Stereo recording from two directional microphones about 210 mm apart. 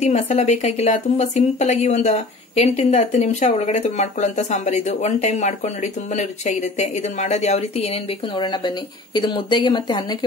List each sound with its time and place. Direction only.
0.0 s speech: 30° left (ahead or behind)